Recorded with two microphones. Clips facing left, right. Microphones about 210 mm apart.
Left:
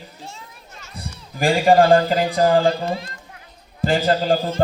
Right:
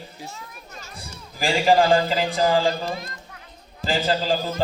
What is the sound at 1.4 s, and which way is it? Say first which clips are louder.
A man's voice: left 4 dB; 55° left (ahead or behind).